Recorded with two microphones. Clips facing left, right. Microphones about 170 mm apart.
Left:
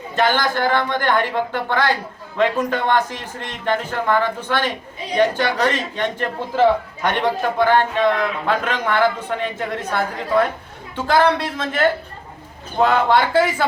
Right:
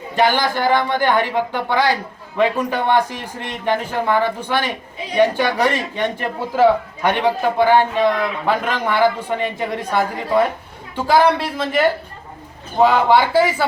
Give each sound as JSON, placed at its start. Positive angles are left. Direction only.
{"t": 0.2, "sound": "speech", "side_deg": -15}